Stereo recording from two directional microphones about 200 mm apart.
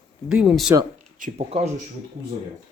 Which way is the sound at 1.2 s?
35° right (ahead or behind).